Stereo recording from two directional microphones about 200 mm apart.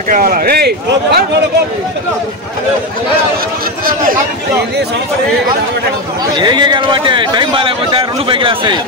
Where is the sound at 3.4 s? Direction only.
45° right (ahead or behind).